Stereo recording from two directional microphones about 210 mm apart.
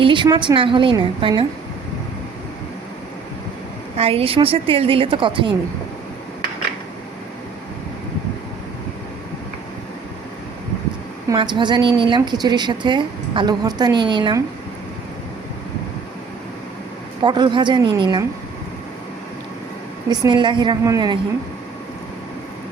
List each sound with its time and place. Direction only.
0.0 s a woman's voice: 20° right (ahead or behind)
3.9 s a woman's voice: 25° right (ahead or behind)
11.3 s a woman's voice: 20° right (ahead or behind)
17.2 s a woman's voice: 20° right (ahead or behind)
20.1 s a woman's voice: 20° right (ahead or behind)